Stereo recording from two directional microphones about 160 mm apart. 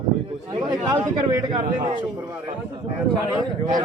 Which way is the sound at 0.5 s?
25° right (ahead or behind).